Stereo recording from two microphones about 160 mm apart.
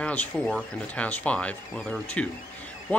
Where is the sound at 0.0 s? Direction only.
5° left (ahead or behind).